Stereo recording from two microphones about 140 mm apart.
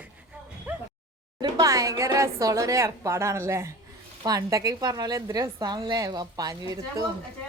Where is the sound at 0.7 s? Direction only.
10° right (ahead or behind).